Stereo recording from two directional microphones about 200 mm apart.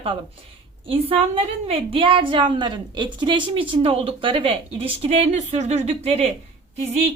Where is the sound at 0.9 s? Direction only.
30° right (ahead or behind).